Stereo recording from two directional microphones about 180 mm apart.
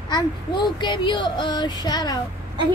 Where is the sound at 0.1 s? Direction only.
25° left (ahead or behind).